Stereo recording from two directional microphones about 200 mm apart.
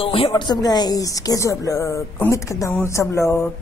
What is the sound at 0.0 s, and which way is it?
Speech, 30° left (ahead or behind).